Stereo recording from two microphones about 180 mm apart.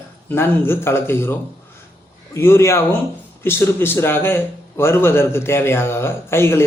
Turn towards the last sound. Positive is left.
turn(degrees=15)  # may be behind; listen again after turning